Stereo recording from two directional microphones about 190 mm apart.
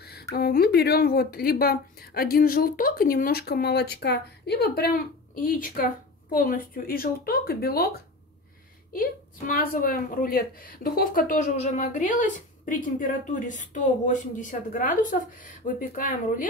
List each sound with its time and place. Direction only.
0.0 s a sound: 55° left (ahead or behind)
0.4 s a woman's voice: 55° left (ahead or behind)
8.9 s a woman's voice: 45° left (ahead or behind)